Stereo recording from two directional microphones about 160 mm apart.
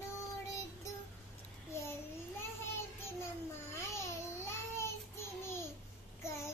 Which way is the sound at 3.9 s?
15° left (ahead or behind).